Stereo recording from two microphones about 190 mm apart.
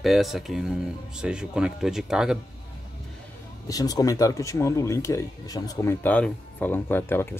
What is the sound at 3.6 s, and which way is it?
Speech, 20° left (ahead or behind).